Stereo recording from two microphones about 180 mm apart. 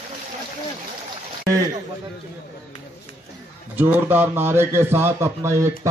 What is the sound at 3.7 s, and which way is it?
A man's voice, 10° right (ahead or behind).